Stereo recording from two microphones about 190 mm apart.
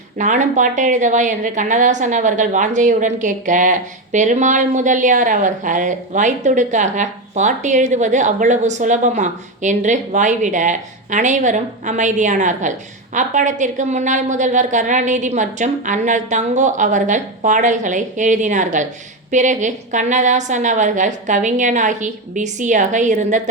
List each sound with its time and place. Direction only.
0.2 s a woman's voice: 40° right (ahead or behind)